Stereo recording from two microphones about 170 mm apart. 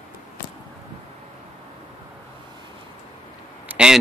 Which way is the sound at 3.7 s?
5° right (ahead or behind).